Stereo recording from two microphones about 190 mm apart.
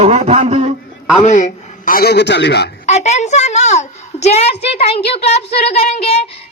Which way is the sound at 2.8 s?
35° left (ahead or behind).